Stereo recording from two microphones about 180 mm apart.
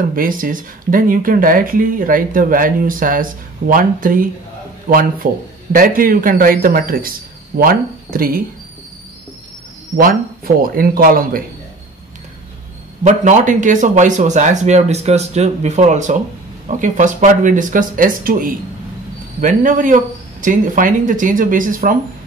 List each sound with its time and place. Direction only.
0.1 s speech: 50° right (ahead or behind)
9.9 s speech: 55° right (ahead or behind)
13.0 s speech: 45° right (ahead or behind)